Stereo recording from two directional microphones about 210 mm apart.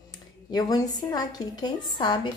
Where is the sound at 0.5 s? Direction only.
20° left (ahead or behind).